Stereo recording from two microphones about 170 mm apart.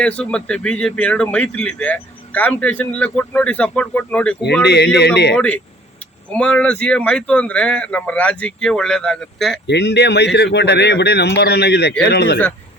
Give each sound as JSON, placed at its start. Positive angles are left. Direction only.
{"t": 0.0, "sound": "speech", "side_deg": 5}
{"t": 4.6, "sound": "speech", "side_deg": 80}
{"t": 6.3, "sound": "speech", "side_deg": 5}
{"t": 9.6, "sound": "speech", "side_deg": 85}
{"t": 12.1, "sound": "speech", "side_deg": 90}